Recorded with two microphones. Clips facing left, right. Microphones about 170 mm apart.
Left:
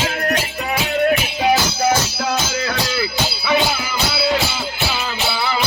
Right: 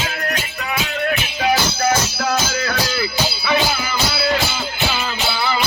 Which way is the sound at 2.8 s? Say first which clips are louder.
Even; centre (ahead or behind).